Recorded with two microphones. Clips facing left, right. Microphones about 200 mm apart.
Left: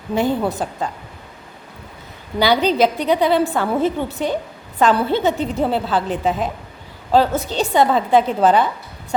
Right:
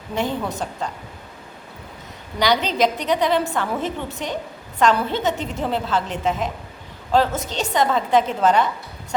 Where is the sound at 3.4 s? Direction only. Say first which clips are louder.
Left 6 dB; 35° left (ahead or behind).